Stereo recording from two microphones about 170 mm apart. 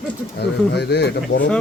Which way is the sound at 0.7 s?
80° left.